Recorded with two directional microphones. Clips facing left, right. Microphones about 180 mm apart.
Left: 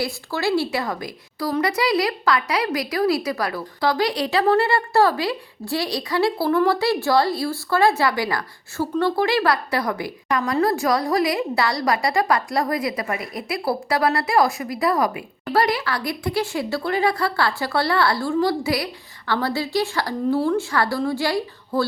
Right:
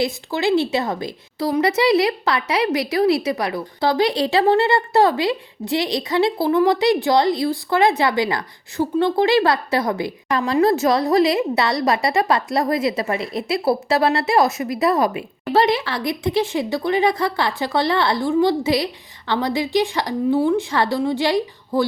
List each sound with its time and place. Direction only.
0.0 s a woman's voice: 20° right (ahead or behind)